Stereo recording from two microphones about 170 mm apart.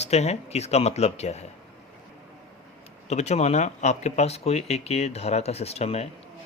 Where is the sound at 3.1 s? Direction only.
40° left (ahead or behind).